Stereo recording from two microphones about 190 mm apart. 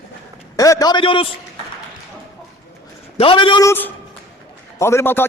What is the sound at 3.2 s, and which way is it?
Speech, 30° left (ahead or behind).